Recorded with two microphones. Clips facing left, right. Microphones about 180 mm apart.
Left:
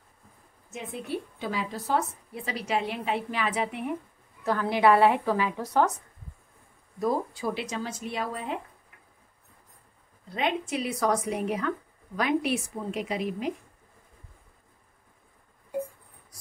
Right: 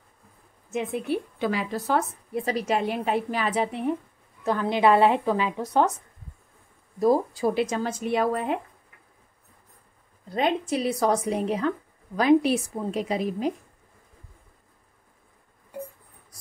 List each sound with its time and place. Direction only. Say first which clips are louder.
1.4 s a woman's voice: right 5 dB; 70° right (ahead or behind)
2.3 s a woman's voice: right 5 dB; 45° right (ahead or behind)
4.5 s a woman's voice: right 1 dB; 20° right (ahead or behind)
7.0 s a woman's voice: right 6 dB; 35° right (ahead or behind); by 8.5 s 55° right (ahead or behind)
10.3 s a woman's voice: right 4 dB; 35° right (ahead or behind)